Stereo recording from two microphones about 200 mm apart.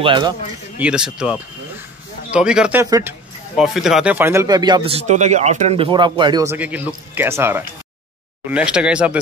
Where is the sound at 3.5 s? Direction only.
Centre (ahead or behind).